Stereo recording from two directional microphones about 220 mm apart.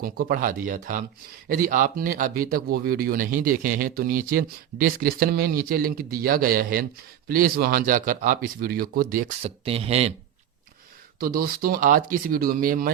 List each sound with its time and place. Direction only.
0.0 s speech: 40° right (ahead or behind)
9.4 s speech: 25° right (ahead or behind)
11.2 s speech: 40° right (ahead or behind)